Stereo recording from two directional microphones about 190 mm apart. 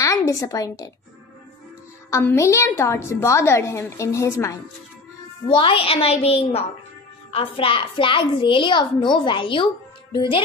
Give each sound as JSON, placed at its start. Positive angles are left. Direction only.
{"t": 0.0, "sound": "a woman's voice", "side_deg": 20}
{"t": 2.0, "sound": "a woman's voice", "side_deg": 15}
{"t": 5.5, "sound": "a woman's voice", "side_deg": 30}